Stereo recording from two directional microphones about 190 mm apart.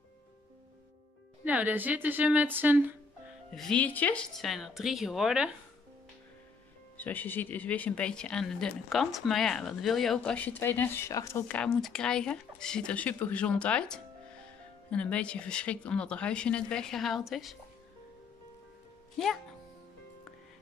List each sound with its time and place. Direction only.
1.4 s a woman's voice: 10° right (ahead or behind)
3.5 s speech: 5° left (ahead or behind)
7.0 s speech: 10° left (ahead or behind)